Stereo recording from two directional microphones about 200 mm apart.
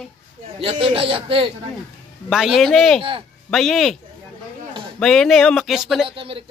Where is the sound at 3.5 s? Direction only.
Centre (ahead or behind).